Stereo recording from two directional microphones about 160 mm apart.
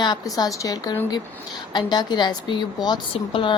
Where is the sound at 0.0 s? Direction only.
25° left (ahead or behind).